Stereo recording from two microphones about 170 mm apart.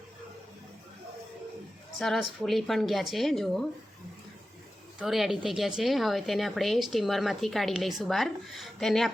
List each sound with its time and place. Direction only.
2.0 s speech: centre (ahead or behind)
4.9 s speech: centre (ahead or behind)